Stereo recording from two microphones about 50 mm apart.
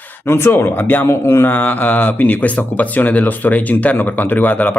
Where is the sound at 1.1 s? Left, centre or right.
Left.